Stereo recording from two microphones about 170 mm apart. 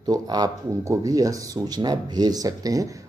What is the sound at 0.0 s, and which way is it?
Speech, 20° right (ahead or behind).